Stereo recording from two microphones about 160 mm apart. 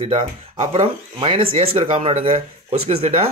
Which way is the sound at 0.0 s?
35° right (ahead or behind).